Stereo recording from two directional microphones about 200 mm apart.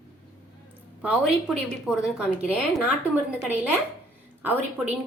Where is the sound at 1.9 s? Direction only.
Centre (ahead or behind).